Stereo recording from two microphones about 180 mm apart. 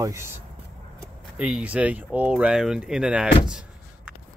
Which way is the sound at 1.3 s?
5° right (ahead or behind).